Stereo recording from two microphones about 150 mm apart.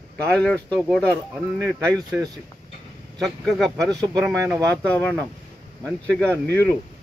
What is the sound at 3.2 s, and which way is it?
Speech, centre (ahead or behind).